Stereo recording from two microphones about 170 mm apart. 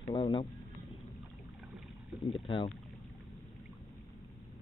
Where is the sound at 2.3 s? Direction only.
30° left (ahead or behind).